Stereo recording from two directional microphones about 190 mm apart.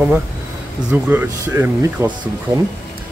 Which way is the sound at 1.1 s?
10° right (ahead or behind).